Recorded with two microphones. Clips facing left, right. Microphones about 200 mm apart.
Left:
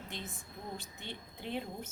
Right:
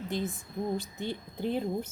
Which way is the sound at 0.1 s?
40° right (ahead or behind).